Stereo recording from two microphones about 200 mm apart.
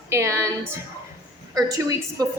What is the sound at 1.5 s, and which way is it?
Speech, 15° right (ahead or behind).